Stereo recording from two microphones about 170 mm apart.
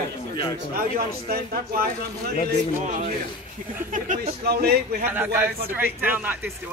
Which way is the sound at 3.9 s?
50° right (ahead or behind).